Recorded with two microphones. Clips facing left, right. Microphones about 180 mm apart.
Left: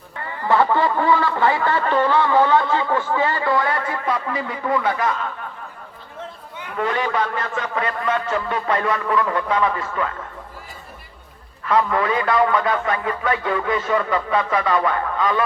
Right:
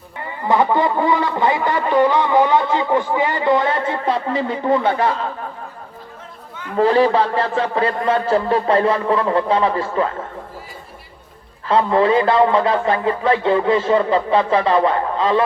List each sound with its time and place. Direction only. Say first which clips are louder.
0.2 s speech: right 1 dB; 20° right (ahead or behind)
6.7 s a man's voice: right 9 dB; 30° right (ahead or behind)
11.6 s speech: right 4 dB; 30° right (ahead or behind)